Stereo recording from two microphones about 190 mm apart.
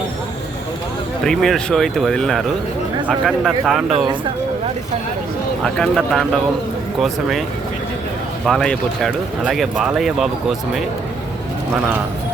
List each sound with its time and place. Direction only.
1.2 s speech: centre (ahead or behind)
3.9 s speech: 25° right (ahead or behind)
5.6 s speech: centre (ahead or behind)
8.4 s speech: 5° left (ahead or behind)